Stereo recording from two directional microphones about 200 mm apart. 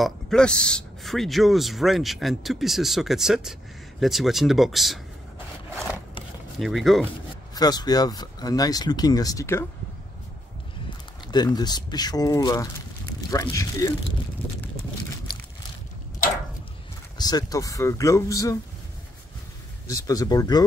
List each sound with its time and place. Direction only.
0.0 s speech: 5° left (ahead or behind)
6.6 s speech: centre (ahead or behind)
7.5 s speech: 20° left (ahead or behind)
11.3 s speech: 20° left (ahead or behind)
17.2 s speech: 20° left (ahead or behind)
19.9 s speech: 20° left (ahead or behind)